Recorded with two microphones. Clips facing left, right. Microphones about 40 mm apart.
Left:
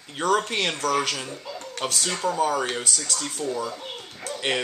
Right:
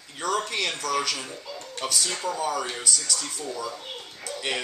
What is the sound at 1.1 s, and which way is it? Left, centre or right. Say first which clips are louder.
Speech: left 2 dB; centre.